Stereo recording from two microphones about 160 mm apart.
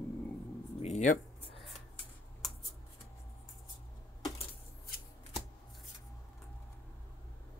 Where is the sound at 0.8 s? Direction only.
50° left (ahead or behind).